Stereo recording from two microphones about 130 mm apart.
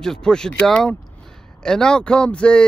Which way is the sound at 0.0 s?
5° left (ahead or behind).